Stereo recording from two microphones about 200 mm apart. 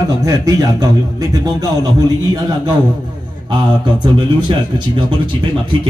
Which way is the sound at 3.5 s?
25° right (ahead or behind).